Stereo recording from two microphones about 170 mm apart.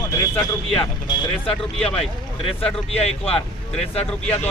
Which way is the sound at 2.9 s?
35° left (ahead or behind).